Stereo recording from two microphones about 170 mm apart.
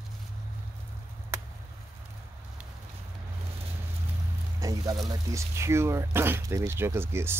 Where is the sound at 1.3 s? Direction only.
15° right (ahead or behind).